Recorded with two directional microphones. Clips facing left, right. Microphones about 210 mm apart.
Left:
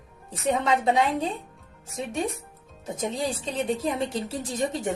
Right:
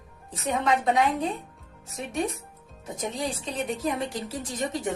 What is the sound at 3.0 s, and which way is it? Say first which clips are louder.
A woman's voice: left 2 dB; 25° left (ahead or behind).